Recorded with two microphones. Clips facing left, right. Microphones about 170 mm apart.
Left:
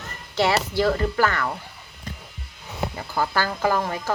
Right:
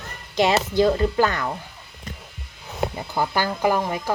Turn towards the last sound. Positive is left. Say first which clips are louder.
# right 2 dB
turn(degrees=-15)  # may be behind; listen again after turning